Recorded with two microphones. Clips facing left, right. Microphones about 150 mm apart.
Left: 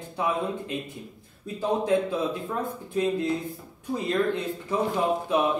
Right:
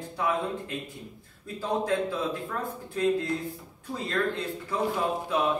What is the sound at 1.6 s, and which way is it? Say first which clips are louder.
Speech: left 3 dB; 20° left (ahead or behind).